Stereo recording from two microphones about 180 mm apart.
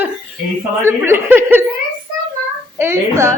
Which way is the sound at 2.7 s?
15° right (ahead or behind).